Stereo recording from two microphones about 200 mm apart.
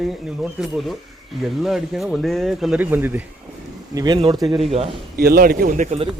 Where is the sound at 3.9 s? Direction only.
20° right (ahead or behind).